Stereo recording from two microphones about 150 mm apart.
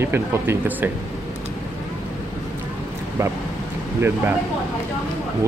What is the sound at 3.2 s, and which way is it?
Speech, 20° right (ahead or behind).